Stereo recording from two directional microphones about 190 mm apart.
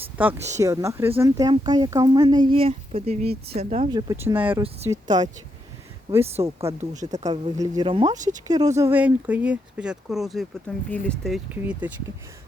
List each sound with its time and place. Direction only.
0.2 s speech: 10° right (ahead or behind); by 3.8 s 35° right (ahead or behind)
3.9 s speech: 20° right (ahead or behind)
6.6 s speech: 15° right (ahead or behind)
6.9 s speech: 40° right (ahead or behind)
7.3 s speech: 20° right (ahead or behind)
8.1 s speech: 40° right (ahead or behind)
8.4 s speech: 20° right (ahead or behind); by 11.3 s 5° left (ahead or behind)
11.5 s speech: 10° right (ahead or behind)